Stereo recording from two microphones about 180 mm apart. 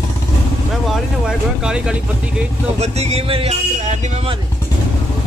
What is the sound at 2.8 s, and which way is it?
Speech, 35° right (ahead or behind).